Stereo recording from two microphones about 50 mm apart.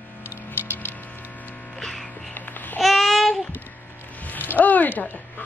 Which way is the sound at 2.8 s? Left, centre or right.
Centre.